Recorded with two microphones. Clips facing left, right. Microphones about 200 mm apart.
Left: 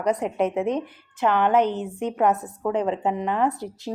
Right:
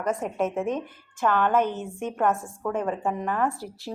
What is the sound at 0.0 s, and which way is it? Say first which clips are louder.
A woman's voice: left 4 dB; 20° left (ahead or behind).